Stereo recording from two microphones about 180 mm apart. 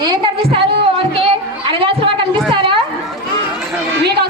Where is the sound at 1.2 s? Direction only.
30° right (ahead or behind).